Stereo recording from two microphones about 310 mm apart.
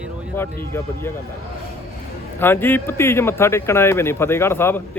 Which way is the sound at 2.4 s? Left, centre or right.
Centre.